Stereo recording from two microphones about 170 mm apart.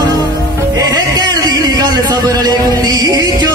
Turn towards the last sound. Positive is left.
turn(degrees=-20)  # may be behind; listen again after turning